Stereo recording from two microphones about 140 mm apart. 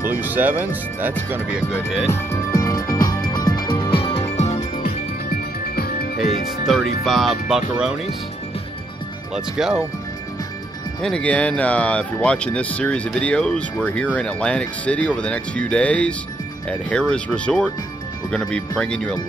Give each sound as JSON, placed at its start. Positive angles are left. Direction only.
{"t": 0.0, "sound": "speech", "side_deg": -15}
{"t": 2.0, "sound": "music", "side_deg": 20}
{"t": 5.8, "sound": "music", "side_deg": 90}
{"t": 6.6, "sound": "speech", "side_deg": -5}
{"t": 9.3, "sound": "speech", "side_deg": -5}
{"t": 11.0, "sound": "speech", "side_deg": 5}